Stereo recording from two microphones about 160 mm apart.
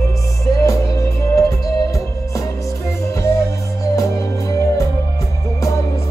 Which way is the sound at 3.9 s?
20° left (ahead or behind).